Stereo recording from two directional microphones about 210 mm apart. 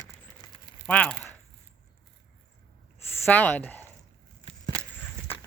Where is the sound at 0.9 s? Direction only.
5° left (ahead or behind).